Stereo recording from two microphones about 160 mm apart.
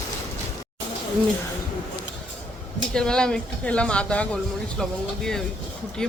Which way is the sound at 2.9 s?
5° left (ahead or behind).